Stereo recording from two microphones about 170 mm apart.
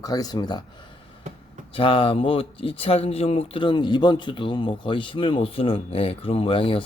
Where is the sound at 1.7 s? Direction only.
30° left (ahead or behind).